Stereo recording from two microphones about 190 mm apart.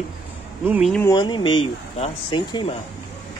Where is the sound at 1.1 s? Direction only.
25° left (ahead or behind).